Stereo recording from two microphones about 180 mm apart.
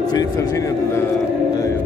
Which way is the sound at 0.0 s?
20° left (ahead or behind).